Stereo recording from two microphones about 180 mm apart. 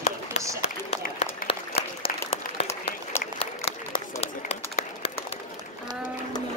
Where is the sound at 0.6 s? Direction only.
35° left (ahead or behind).